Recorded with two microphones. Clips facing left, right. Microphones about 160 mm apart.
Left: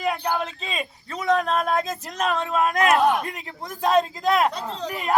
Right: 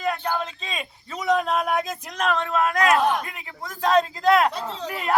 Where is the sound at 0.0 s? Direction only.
15° left (ahead or behind); by 1.5 s 5° right (ahead or behind).